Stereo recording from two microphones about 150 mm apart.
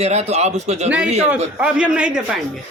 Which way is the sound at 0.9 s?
5° right (ahead or behind).